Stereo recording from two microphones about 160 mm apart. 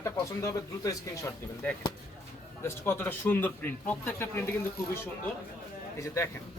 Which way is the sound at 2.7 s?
15° left (ahead or behind).